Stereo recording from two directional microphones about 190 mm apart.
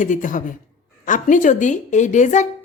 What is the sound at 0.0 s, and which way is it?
A man's voice, 45° left (ahead or behind).